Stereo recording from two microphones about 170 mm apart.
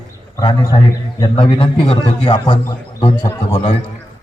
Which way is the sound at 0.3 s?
25° left (ahead or behind).